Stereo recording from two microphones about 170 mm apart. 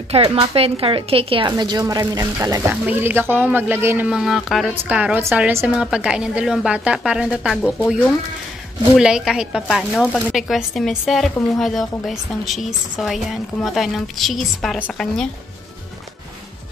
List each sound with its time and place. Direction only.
0.1 s a woman's voice: 35° right (ahead or behind); by 15.2 s centre (ahead or behind)